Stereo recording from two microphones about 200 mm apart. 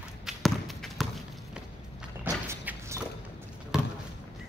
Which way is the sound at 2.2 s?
10° right (ahead or behind).